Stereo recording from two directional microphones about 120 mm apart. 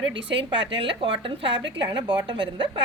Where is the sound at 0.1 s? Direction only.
45° right (ahead or behind).